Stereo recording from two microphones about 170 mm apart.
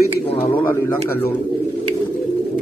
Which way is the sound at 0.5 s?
15° left (ahead or behind).